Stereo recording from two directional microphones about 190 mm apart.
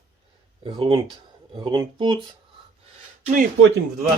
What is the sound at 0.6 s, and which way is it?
Speech, 25° right (ahead or behind).